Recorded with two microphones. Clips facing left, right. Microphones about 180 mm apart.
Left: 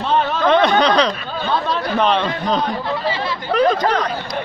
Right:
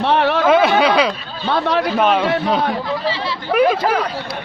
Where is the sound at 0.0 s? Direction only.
70° right (ahead or behind).